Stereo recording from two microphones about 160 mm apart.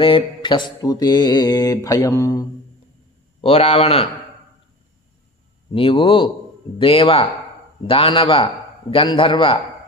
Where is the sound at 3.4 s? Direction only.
35° left (ahead or behind).